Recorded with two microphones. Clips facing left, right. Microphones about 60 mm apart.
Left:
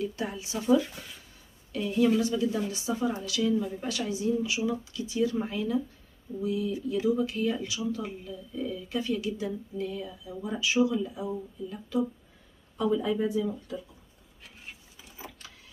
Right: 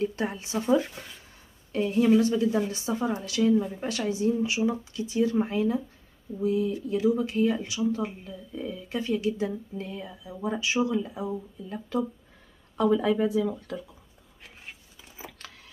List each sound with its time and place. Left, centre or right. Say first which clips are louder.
0.0 s speech: right 4 dB; right
12.7 s speech: right 4 dB; right